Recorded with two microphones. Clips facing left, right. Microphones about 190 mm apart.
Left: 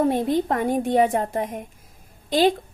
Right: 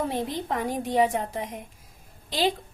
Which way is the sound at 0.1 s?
50° left (ahead or behind).